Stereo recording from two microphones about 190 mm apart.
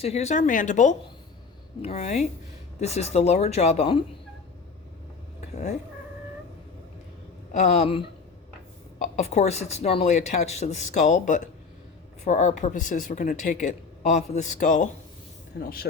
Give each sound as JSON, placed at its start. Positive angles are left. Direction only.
{"t": 0.0, "sound": "speech", "side_deg": 35}
{"t": 7.5, "sound": "speech", "side_deg": 35}
{"t": 15.5, "sound": "speech", "side_deg": 60}